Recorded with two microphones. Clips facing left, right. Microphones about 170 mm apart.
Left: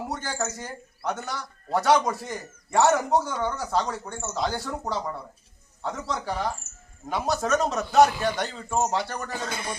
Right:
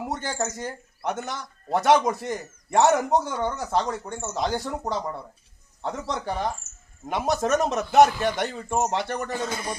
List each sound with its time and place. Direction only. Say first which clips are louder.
0.1 s a man's voice: right 2 dB; 20° right (ahead or behind)
9.5 s speech: right 2 dB; 40° right (ahead or behind)